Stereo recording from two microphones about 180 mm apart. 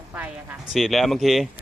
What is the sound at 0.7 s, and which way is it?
Speech, centre (ahead or behind).